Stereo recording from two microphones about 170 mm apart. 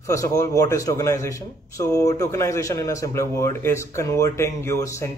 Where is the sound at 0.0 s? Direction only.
20° left (ahead or behind).